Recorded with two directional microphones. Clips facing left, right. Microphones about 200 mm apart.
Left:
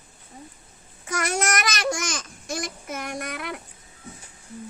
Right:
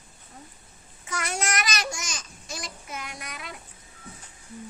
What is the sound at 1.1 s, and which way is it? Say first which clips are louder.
Speech: left 5 dB; 40° left (ahead or behind).